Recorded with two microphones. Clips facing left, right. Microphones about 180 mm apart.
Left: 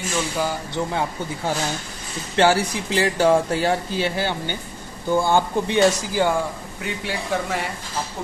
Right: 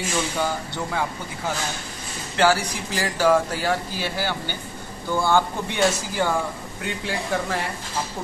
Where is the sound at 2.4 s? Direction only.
25° left (ahead or behind).